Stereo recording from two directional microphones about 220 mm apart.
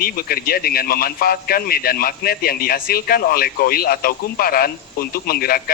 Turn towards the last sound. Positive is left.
turn(degrees=45)  # may be behind; listen again after turning